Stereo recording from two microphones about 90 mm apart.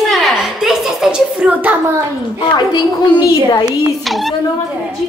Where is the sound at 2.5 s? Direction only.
55° left (ahead or behind).